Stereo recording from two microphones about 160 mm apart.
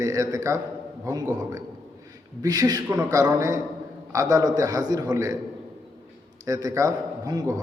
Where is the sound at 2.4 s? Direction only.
25° right (ahead or behind).